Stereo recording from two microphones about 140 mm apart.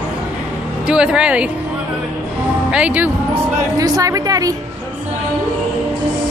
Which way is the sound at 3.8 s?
25° right (ahead or behind).